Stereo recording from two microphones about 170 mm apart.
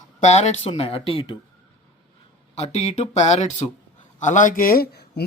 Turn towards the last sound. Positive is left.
turn(degrees=60)  # may be behind; listen again after turning